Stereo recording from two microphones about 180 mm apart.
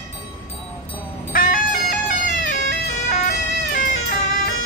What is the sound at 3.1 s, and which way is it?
Emergency vehicle, 45° left (ahead or behind).